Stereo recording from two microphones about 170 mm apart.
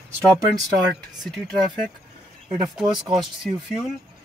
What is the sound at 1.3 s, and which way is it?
Speech, 5° left (ahead or behind).